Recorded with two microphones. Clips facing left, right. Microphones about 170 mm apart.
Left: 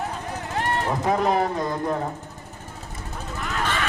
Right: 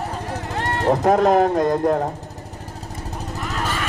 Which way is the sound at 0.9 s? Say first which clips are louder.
Right 8 dB; 45° right (ahead or behind).